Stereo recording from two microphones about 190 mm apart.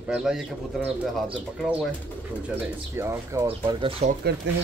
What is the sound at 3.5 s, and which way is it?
Speech, 30° right (ahead or behind).